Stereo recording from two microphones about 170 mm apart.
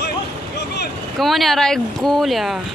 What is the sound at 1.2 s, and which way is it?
Speech, centre (ahead or behind).